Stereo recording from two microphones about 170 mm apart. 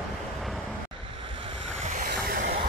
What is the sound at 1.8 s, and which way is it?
Waves, 50° right (ahead or behind).